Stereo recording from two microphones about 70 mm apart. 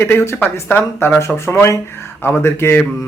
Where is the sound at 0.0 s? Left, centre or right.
Left.